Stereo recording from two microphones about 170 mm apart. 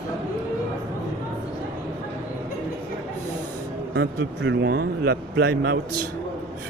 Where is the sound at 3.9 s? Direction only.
90° right.